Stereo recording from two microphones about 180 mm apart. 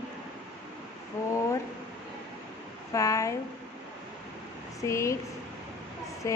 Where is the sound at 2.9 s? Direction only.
20° left (ahead or behind).